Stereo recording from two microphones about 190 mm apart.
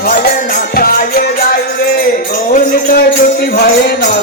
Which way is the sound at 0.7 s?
50° left (ahead or behind).